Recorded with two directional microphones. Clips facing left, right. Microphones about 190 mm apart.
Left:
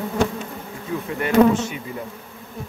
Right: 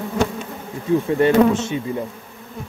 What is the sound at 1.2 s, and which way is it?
Speech, 30° right (ahead or behind).